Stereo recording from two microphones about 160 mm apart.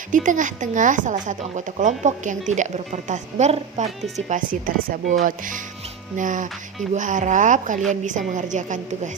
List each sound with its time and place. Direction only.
0.1 s a woman's voice: 55° right (ahead or behind)
4.6 s a woman's voice: 60° right (ahead or behind)